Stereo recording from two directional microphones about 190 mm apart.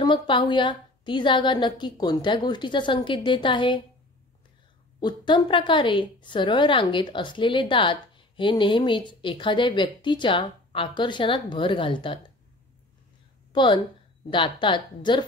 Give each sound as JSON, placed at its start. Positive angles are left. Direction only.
{"t": 0.0, "sound": "a woman's voice", "side_deg": 25}
{"t": 5.0, "sound": "a woman's voice", "side_deg": 25}
{"t": 13.5, "sound": "a woman's voice", "side_deg": 25}